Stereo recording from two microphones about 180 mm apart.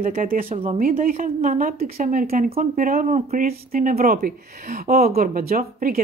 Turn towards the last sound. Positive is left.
turn(degrees=-55)  # may be behind; listen again after turning